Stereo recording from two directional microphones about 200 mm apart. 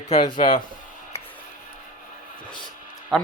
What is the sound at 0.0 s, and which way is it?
Speech, 35° left (ahead or behind).